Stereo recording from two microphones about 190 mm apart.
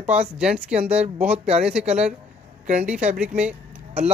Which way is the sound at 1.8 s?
35° right (ahead or behind).